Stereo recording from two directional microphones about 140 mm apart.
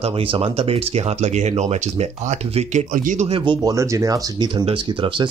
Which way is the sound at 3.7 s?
20° right (ahead or behind).